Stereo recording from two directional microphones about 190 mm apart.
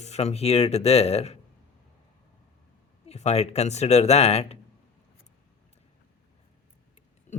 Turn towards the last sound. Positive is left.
turn(degrees=40)  # may be behind; listen again after turning